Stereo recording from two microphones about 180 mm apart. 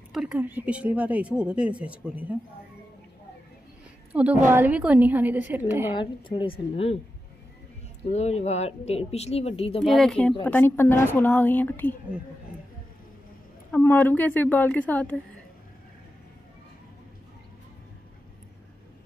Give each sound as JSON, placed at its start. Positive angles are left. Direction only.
{"t": 0.1, "sound": "speech", "side_deg": -5}
{"t": 4.1, "sound": "a woman's voice", "side_deg": -5}
{"t": 5.9, "sound": "a woman's voice", "side_deg": 25}
{"t": 8.1, "sound": "speech", "side_deg": 35}
{"t": 9.8, "sound": "a woman's voice", "side_deg": 0}
{"t": 13.7, "sound": "a woman's voice", "side_deg": 10}